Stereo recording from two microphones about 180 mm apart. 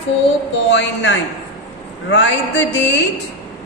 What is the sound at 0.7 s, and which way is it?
A woman's voice, 90° left.